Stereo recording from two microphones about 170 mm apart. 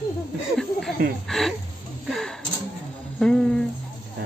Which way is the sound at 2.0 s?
Centre (ahead or behind).